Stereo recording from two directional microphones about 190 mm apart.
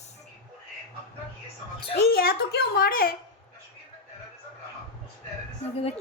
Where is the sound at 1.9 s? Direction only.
55° left (ahead or behind).